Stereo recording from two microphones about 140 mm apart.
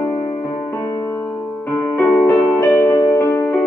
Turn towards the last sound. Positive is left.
turn(degrees=15)  # may be behind; listen again after turning